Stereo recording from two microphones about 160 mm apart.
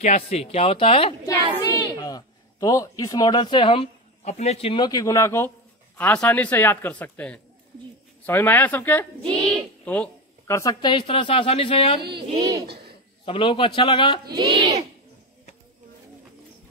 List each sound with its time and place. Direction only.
0.0 s speech: 40° left (ahead or behind)
1.2 s a woman's voice: 20° left (ahead or behind)
12.4 s speech: 25° right (ahead or behind)
13.2 s speech: 35° left (ahead or behind)
14.3 s a child's voice: 35° right (ahead or behind)